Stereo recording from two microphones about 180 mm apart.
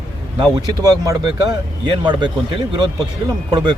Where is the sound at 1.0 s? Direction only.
20° right (ahead or behind).